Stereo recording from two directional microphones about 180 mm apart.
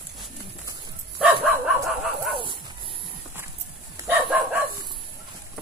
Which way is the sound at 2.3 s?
30° right (ahead or behind).